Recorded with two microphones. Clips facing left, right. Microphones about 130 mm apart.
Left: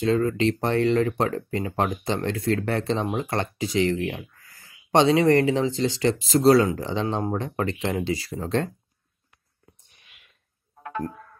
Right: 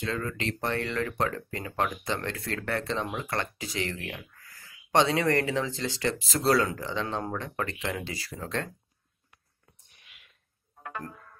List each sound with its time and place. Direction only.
0.0 s speech: 25° left (ahead or behind)